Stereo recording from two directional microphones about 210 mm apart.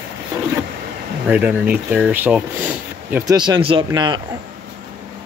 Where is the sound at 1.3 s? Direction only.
5° right (ahead or behind).